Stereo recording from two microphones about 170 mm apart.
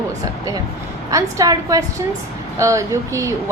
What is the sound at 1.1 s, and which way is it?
A woman's voice, 20° right (ahead or behind).